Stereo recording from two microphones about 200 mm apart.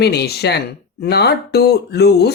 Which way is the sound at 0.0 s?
55° left (ahead or behind).